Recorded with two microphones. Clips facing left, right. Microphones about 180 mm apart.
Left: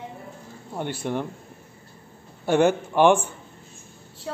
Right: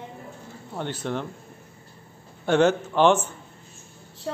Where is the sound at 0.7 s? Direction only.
10° left (ahead or behind).